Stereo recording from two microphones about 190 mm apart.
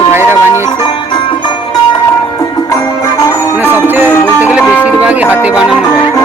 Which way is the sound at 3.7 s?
10° right (ahead or behind).